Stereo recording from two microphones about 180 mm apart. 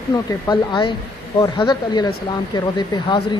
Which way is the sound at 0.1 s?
25° left (ahead or behind).